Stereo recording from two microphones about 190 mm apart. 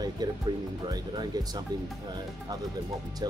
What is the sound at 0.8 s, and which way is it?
Speech, 20° right (ahead or behind).